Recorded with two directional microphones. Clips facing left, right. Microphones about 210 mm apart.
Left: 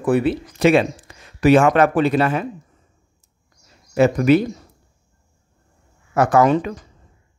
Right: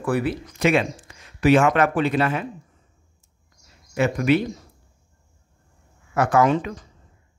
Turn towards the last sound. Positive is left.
turn(degrees=40)  # may be behind; listen again after turning